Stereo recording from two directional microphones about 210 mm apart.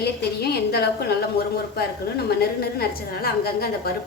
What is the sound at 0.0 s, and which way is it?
A woman's voice, 50° left (ahead or behind).